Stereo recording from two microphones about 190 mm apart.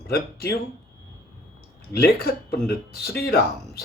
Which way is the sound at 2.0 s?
55° left (ahead or behind).